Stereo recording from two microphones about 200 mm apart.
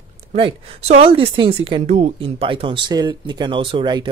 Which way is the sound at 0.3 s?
30° right (ahead or behind).